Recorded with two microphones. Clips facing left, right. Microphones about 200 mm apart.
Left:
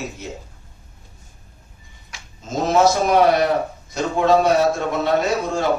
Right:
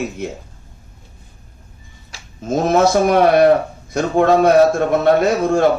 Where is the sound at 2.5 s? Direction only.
55° right (ahead or behind).